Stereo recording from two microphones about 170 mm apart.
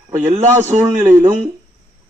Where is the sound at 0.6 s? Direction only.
15° right (ahead or behind).